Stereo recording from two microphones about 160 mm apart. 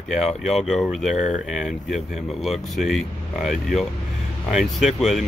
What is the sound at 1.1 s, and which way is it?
Speech, 45° left (ahead or behind).